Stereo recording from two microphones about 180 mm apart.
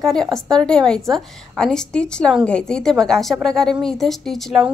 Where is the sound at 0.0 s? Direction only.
Centre (ahead or behind).